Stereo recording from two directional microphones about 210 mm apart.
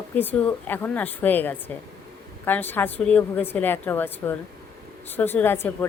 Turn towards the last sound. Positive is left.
turn(degrees=10)  # may be behind; listen again after turning